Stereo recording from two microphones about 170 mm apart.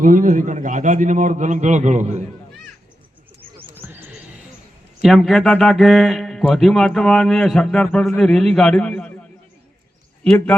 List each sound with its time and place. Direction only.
0.0 s a man's voice: 50° right (ahead or behind)
3.8 s a sound: 10° right (ahead or behind)
5.0 s speech: centre (ahead or behind)
10.2 s a man's voice: 10° left (ahead or behind)